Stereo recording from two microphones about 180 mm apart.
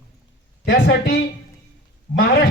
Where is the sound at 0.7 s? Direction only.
60° left (ahead or behind).